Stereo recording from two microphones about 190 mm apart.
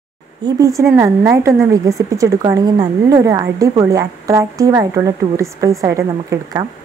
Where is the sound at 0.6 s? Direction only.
15° right (ahead or behind).